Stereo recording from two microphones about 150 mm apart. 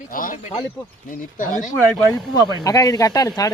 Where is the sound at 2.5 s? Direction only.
25° left (ahead or behind).